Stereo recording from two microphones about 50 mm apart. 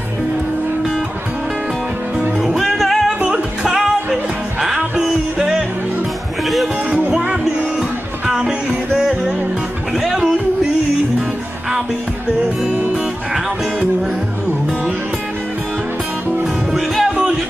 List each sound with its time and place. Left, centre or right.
2.4 s music: centre
3.3 s music: centre
6.4 s music: centre
6.9 s music: right
8.3 s music: centre
16.7 s music: centre